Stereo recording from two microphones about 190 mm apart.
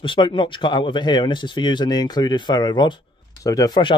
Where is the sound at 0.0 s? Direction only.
25° left (ahead or behind).